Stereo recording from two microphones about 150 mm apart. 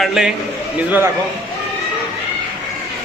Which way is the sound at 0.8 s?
15° right (ahead or behind).